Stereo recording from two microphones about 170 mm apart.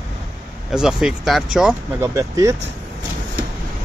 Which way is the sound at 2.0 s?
15° right (ahead or behind).